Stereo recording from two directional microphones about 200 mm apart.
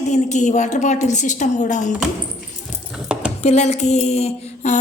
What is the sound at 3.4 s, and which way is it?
A woman's voice, 35° left (ahead or behind).